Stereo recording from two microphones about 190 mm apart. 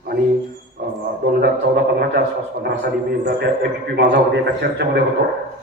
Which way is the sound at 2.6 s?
60° right (ahead or behind).